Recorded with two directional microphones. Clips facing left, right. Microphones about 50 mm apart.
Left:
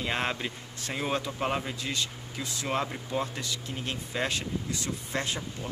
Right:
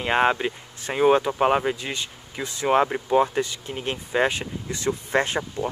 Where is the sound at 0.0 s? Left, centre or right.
Right.